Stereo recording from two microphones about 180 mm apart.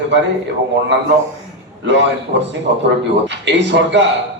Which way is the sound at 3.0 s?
75° right (ahead or behind).